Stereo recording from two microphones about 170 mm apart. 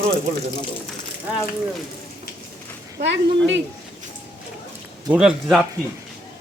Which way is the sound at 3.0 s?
90° right.